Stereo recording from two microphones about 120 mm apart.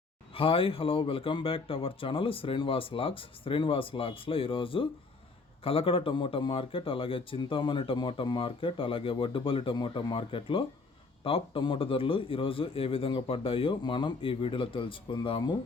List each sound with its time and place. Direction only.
0.3 s speech: 50° left (ahead or behind)